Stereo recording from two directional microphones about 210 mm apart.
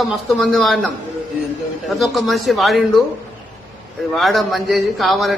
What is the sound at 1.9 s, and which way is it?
Speech, centre (ahead or behind).